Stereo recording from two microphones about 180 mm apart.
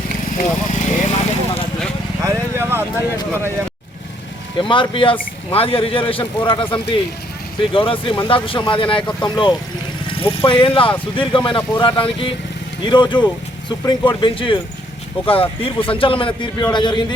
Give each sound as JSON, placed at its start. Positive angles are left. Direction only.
{"t": 0.3, "sound": "vehicle", "side_deg": 45}
{"t": 2.2, "sound": "vehicle", "side_deg": -15}
{"t": 4.7, "sound": "a man's voice", "side_deg": 30}